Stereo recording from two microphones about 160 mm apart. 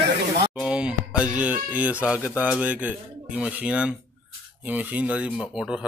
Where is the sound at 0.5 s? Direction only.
5° right (ahead or behind).